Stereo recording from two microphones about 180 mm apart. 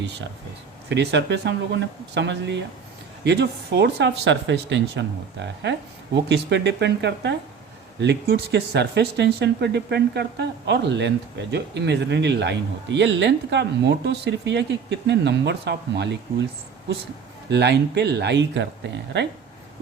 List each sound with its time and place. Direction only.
0.0 s speech: 75° right (ahead or behind)
17.5 s speech: 70° right (ahead or behind)